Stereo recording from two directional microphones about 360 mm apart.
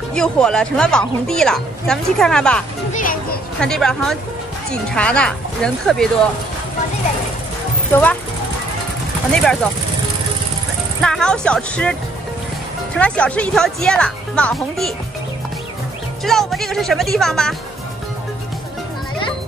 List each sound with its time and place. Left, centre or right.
0.1 s a woman's voice: centre
2.9 s children playing: left
3.6 s a woman's voice: centre
7.9 s a woman's voice: centre
9.4 s a woman's voice: centre
11.0 s a woman's voice: centre
16.3 s a woman's voice: centre